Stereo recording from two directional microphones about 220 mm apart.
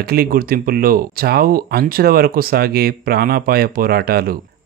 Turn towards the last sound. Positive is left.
turn(degrees=-45)  # may be behind; listen again after turning